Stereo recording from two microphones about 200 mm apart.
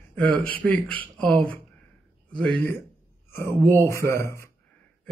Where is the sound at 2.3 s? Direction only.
5° left (ahead or behind).